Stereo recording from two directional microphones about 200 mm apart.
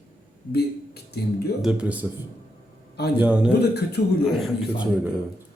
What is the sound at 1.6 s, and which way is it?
Speech, 5° right (ahead or behind).